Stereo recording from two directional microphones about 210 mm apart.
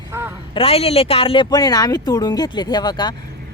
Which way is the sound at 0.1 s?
10° right (ahead or behind).